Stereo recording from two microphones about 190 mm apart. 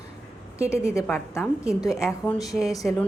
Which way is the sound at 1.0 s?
15° left (ahead or behind).